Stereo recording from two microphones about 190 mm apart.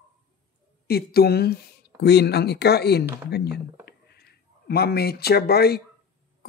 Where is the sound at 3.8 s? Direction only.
60° left (ahead or behind).